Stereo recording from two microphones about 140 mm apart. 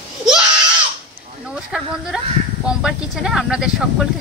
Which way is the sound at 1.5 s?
5° right (ahead or behind).